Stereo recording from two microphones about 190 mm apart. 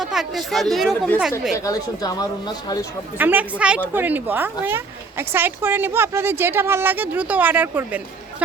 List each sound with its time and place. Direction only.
0.0 s speech: centre (ahead or behind)
1.5 s speech: 20° left (ahead or behind)
3.2 s speech: 10° right (ahead or behind)